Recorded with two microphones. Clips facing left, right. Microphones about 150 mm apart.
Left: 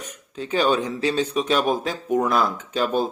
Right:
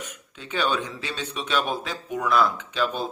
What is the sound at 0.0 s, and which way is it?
A man's voice, 40° left (ahead or behind).